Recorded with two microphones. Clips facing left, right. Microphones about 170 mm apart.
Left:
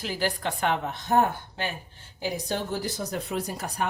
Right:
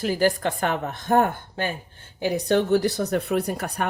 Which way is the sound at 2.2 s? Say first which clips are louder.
Right 8 dB; 65° right (ahead or behind).